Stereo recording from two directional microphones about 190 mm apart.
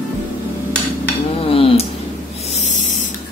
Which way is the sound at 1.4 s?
30° left (ahead or behind).